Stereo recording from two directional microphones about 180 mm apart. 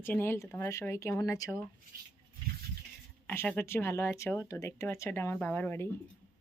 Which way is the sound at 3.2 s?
10° left (ahead or behind).